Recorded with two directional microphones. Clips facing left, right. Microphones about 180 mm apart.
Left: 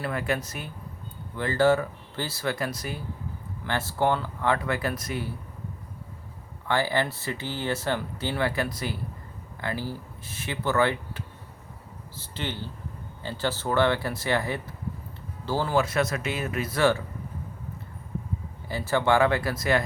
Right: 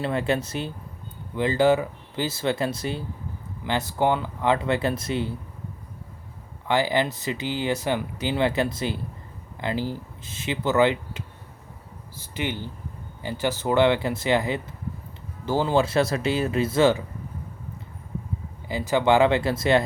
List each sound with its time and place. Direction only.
0.0 s speech: 25° right (ahead or behind)
6.7 s speech: 15° right (ahead or behind)
18.7 s speech: 15° right (ahead or behind)